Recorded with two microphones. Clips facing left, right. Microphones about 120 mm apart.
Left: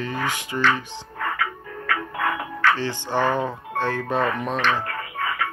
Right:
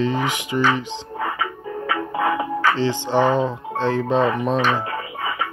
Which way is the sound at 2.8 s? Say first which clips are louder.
Right 5 dB; 15° right (ahead or behind).